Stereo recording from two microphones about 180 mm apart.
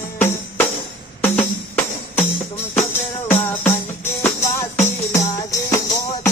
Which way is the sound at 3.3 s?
10° left (ahead or behind).